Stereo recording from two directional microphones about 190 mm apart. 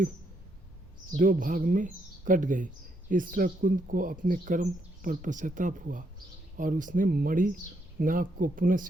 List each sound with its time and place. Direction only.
1.1 s speech: 45° right (ahead or behind)